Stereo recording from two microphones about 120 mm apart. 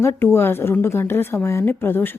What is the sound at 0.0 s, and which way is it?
Speech, 20° left (ahead or behind).